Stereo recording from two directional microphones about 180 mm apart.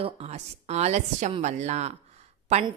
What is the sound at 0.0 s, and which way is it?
A woman's voice, 35° right (ahead or behind).